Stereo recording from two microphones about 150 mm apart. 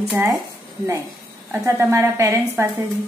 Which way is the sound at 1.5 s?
15° right (ahead or behind).